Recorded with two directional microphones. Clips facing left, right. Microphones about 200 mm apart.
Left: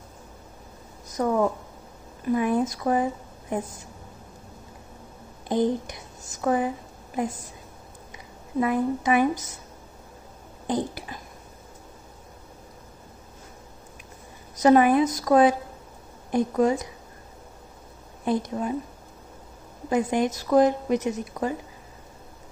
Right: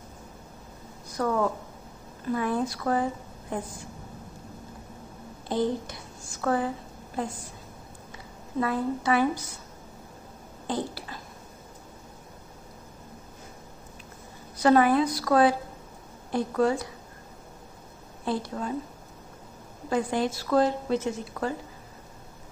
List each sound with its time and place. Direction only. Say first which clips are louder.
1.1 s a woman's voice: left 3 dB; 20° left (ahead or behind)
5.5 s speech: left 3 dB; 20° left (ahead or behind)
8.5 s a woman's voice: left 4 dB; 15° left (ahead or behind)
10.7 s speech: left 4 dB; 15° left (ahead or behind)
14.6 s a woman's voice: left 3 dB; 15° left (ahead or behind)
18.2 s speech: left 4 dB; 20° left (ahead or behind)
19.9 s a woman's voice: left 3 dB; 15° left (ahead or behind)